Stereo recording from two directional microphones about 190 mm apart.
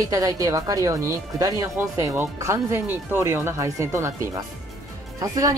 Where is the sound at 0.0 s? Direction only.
15° right (ahead or behind).